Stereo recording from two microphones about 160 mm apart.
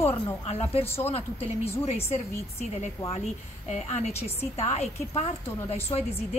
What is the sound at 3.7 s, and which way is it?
A woman's voice, 45° left (ahead or behind).